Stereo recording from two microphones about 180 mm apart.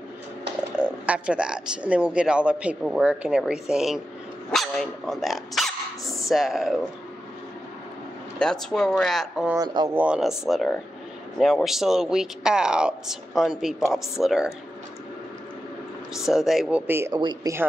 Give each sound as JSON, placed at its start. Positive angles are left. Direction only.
{"t": 0.7, "sound": "speech", "side_deg": -10}
{"t": 4.5, "sound": "dog", "side_deg": 0}
{"t": 6.2, "sound": "speech", "side_deg": 0}
{"t": 8.4, "sound": "speech", "side_deg": 5}
{"t": 9.5, "sound": "speech", "side_deg": -20}
{"t": 9.9, "sound": "speech", "side_deg": -5}
{"t": 16.2, "sound": "speech", "side_deg": 0}
{"t": 16.8, "sound": "speech", "side_deg": -10}
{"t": 17.2, "sound": "speech", "side_deg": -25}